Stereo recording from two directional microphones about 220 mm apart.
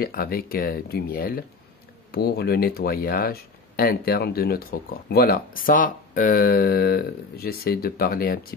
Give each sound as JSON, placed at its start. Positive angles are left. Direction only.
{"t": 0.0, "sound": "speech", "side_deg": 40}